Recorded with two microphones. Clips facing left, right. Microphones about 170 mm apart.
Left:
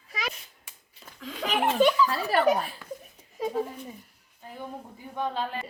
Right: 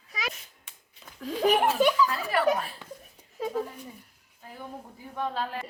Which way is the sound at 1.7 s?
5° right (ahead or behind).